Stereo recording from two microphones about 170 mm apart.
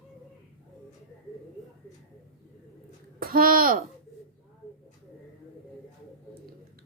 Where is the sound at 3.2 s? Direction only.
55° right (ahead or behind).